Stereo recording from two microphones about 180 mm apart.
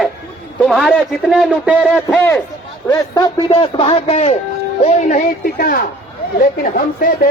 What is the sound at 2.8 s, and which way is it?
Speech, 20° left (ahead or behind).